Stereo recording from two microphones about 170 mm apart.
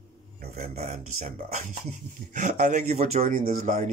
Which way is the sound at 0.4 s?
45° right (ahead or behind).